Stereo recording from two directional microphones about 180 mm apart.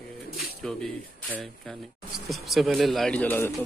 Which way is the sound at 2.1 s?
Centre (ahead or behind).